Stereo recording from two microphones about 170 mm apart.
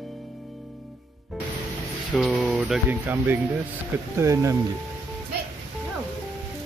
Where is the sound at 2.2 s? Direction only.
Centre (ahead or behind); by 4.6 s 20° right (ahead or behind).